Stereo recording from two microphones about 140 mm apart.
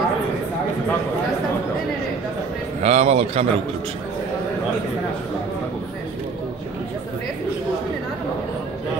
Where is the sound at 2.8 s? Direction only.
50° right (ahead or behind).